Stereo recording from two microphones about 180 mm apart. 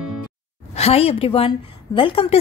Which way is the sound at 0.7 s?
35° left (ahead or behind).